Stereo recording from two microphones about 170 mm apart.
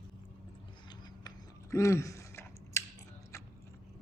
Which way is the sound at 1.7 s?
15° left (ahead or behind).